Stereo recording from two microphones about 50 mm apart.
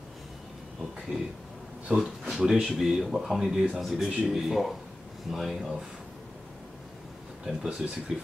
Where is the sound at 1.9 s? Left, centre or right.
Right.